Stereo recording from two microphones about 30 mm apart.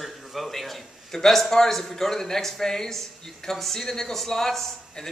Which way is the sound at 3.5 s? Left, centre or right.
Centre.